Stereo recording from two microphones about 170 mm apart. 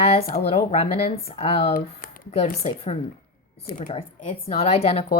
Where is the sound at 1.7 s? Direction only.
60° left (ahead or behind).